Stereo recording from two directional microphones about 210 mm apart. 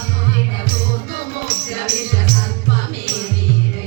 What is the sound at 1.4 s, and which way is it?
Music, 50° left (ahead or behind).